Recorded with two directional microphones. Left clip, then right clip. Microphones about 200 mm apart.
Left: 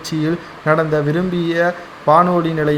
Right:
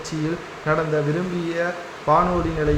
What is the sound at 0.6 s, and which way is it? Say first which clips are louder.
Speech: left 6 dB; 30° left (ahead or behind).